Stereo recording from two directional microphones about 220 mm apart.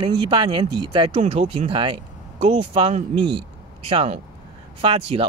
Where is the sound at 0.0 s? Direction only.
20° right (ahead or behind).